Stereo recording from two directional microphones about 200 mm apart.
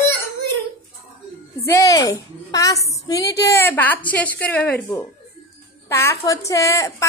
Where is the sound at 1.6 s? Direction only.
15° left (ahead or behind).